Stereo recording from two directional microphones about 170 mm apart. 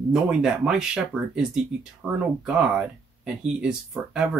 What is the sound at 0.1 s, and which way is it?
Speech, 5° right (ahead or behind).